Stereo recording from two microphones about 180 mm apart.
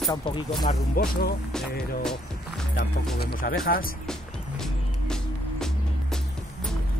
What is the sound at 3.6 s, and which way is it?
Speech, 55° left (ahead or behind).